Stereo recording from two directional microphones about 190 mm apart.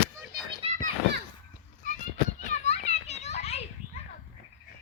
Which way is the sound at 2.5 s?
35° left (ahead or behind).